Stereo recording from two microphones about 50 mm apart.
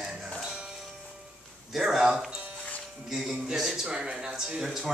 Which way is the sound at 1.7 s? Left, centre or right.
Centre.